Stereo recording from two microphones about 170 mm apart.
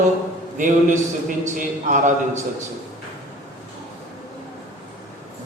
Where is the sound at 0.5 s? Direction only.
50° right (ahead or behind).